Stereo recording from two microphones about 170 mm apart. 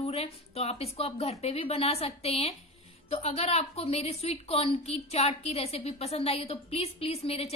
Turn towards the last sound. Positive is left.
turn(degrees=35)  # may be behind; listen again after turning